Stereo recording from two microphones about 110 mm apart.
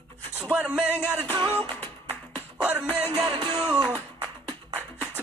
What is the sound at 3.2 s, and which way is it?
Music, 45° right (ahead or behind).